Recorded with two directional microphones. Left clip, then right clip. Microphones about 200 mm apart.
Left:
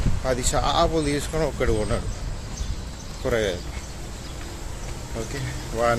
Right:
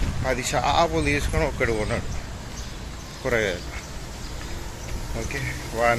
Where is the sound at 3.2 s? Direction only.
15° left (ahead or behind).